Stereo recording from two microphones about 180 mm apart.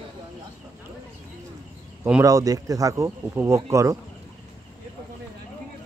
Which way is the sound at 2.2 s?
20° right (ahead or behind).